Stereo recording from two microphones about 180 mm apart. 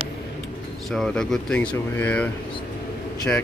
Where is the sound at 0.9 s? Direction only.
5° left (ahead or behind).